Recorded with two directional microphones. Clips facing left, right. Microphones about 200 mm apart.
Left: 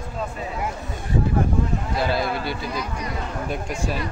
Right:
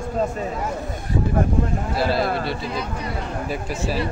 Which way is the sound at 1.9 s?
Centre (ahead or behind).